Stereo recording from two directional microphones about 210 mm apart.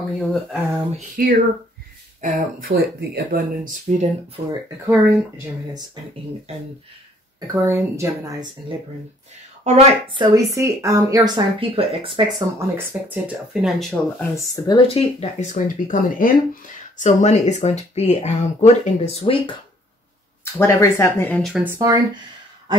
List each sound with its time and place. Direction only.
0.2 s speech: centre (ahead or behind)
0.9 s a sound: 40° right (ahead or behind)
2.2 s speech: 45° right (ahead or behind)
4.5 s speech: 10° right (ahead or behind)
7.3 s a woman's voice: 15° right (ahead or behind)
12.5 s speech: 10° right (ahead or behind)
14.3 s speech: 15° left (ahead or behind)
15.0 s speech: 30° left (ahead or behind)
20.5 s speech: 10° left (ahead or behind)
21.6 s speech: 15° right (ahead or behind)